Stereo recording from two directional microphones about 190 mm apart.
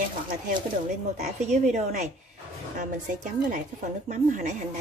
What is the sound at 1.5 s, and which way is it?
Speech, 40° right (ahead or behind).